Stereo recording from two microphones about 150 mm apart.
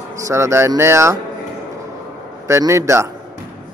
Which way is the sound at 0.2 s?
20° right (ahead or behind).